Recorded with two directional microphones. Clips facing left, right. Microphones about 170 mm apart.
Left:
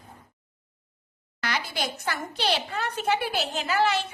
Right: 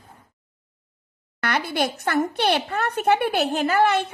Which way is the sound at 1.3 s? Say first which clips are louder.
Right 7 dB; 55° right (ahead or behind).